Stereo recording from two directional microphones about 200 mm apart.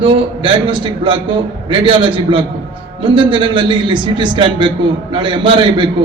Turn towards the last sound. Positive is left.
turn(degrees=-25)  # may be behind; listen again after turning